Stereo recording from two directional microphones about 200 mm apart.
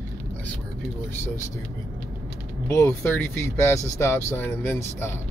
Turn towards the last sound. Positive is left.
turn(degrees=10)  # may be behind; listen again after turning